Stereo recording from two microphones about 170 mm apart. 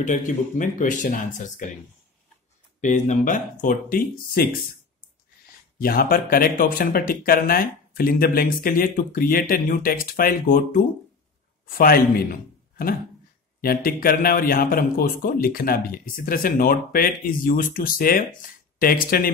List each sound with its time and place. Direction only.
0.0 s speech: 50° left (ahead or behind)
2.8 s speech: 45° left (ahead or behind)
5.8 s speech: 60° left (ahead or behind)
13.6 s speech: 60° left (ahead or behind)